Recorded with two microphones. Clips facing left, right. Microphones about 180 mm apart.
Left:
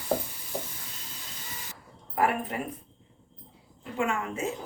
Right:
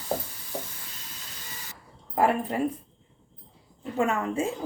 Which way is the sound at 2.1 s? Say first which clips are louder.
Right 3 dB; 30° right (ahead or behind).